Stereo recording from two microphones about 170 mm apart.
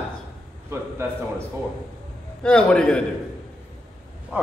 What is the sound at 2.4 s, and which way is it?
Speech, 5° left (ahead or behind).